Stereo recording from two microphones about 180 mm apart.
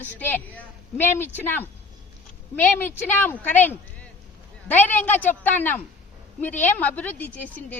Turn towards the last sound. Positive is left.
turn(degrees=10)  # may be behind; listen again after turning